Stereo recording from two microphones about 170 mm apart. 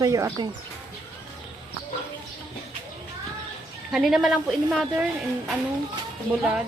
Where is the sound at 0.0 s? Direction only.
20° right (ahead or behind).